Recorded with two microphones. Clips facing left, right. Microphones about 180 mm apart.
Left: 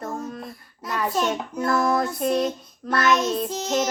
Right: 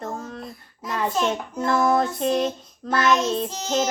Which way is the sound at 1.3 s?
25° right (ahead or behind).